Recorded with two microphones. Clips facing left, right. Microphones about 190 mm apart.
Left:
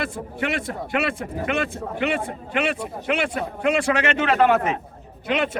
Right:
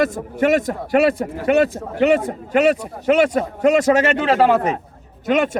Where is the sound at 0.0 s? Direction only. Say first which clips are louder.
Right 9 dB; 45° right (ahead or behind).